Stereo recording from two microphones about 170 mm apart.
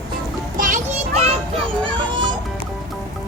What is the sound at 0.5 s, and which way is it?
Children playing, 50° right (ahead or behind).